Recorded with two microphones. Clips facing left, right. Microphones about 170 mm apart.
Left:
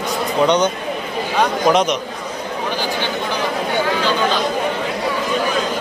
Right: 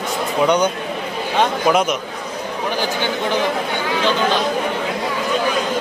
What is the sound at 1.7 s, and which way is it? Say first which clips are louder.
Speech: left 2 dB; 5° right (ahead or behind).